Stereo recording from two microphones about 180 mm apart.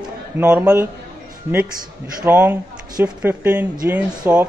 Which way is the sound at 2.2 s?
10° right (ahead or behind).